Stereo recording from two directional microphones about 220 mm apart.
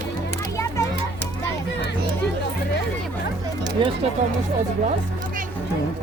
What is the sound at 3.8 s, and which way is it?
Speech, 20° right (ahead or behind).